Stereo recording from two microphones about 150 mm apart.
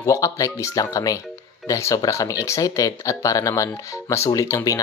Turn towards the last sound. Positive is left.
turn(degrees=20)  # may be behind; listen again after turning